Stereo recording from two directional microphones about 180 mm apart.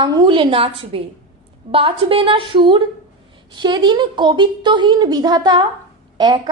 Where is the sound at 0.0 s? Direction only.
30° right (ahead or behind).